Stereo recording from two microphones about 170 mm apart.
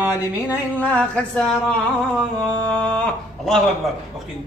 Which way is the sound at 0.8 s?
5° left (ahead or behind).